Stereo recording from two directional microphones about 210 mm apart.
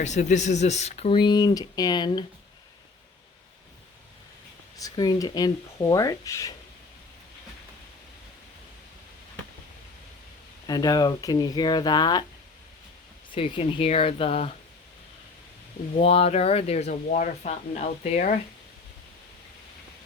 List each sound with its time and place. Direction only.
0.0 s speech: 35° left (ahead or behind)
4.8 s speech: 15° left (ahead or behind)
10.7 s speech: 20° left (ahead or behind)
13.3 s speech: 25° left (ahead or behind)
16.0 s speech: 30° left (ahead or behind)